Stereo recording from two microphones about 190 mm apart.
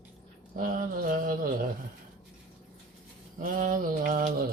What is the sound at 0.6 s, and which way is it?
Speech, 45° right (ahead or behind).